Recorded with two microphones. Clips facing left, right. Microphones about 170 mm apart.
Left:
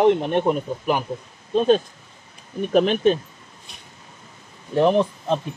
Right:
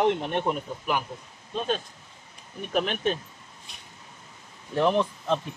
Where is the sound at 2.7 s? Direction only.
30° left (ahead or behind).